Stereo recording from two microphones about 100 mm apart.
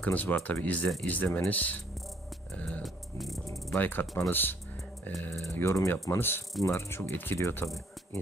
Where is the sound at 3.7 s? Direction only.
20° left (ahead or behind).